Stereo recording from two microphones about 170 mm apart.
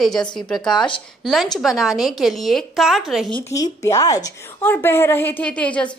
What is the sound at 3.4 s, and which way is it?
A woman's voice, 20° left (ahead or behind).